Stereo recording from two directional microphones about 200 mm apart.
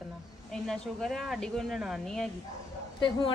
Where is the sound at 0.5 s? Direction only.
Centre (ahead or behind).